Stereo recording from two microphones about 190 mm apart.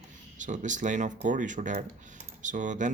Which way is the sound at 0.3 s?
40° right (ahead or behind).